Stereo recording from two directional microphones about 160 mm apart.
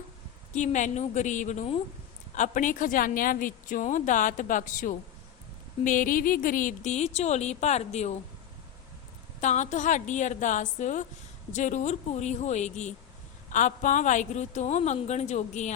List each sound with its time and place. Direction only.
0.5 s a woman's voice: 50° left (ahead or behind)
9.4 s a woman's voice: 45° left (ahead or behind)